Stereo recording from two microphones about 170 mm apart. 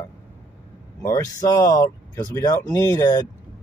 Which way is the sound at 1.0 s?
15° left (ahead or behind).